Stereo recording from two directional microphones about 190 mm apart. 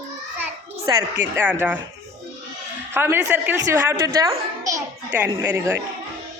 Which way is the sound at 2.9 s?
10° right (ahead or behind).